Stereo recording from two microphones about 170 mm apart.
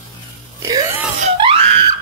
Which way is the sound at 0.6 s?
20° right (ahead or behind).